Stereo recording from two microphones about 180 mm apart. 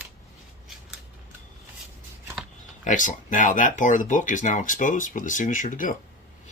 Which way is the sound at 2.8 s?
45° left (ahead or behind).